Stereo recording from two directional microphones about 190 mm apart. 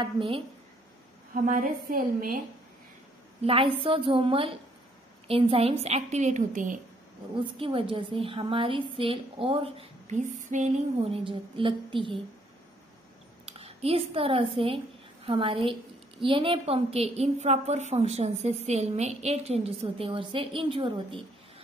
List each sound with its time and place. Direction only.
0.0 s a woman's voice: 25° right (ahead or behind)
1.3 s a woman's voice: 45° right (ahead or behind)
3.4 s a woman's voice: 30° right (ahead or behind)
7.5 s a woman's voice: 30° right (ahead or behind)
13.5 s a woman's voice: 30° right (ahead or behind)